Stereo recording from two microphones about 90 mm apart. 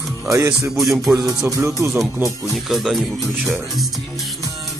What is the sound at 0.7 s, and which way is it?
Speech, 5° right (ahead or behind).